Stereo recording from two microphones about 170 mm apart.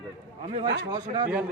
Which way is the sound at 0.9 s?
25° right (ahead or behind).